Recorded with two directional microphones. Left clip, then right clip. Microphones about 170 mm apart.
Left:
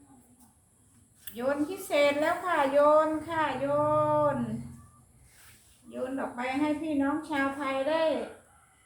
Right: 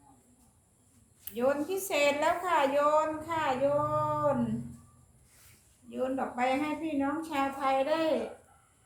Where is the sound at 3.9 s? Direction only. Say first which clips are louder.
Left 5 dB; 30° right (ahead or behind).